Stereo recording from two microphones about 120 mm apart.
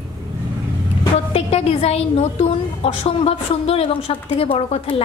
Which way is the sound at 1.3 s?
60° left (ahead or behind).